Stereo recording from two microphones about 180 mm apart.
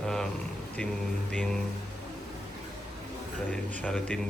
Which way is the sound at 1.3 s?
5° left (ahead or behind).